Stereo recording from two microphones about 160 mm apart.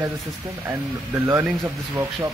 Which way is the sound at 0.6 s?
15° right (ahead or behind).